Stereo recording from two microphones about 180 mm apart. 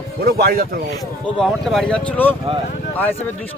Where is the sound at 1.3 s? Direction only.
Centre (ahead or behind).